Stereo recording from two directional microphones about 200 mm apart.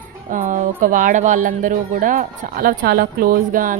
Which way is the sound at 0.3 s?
40° right (ahead or behind).